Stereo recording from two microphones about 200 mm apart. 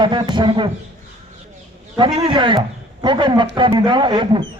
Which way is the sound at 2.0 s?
25° right (ahead or behind).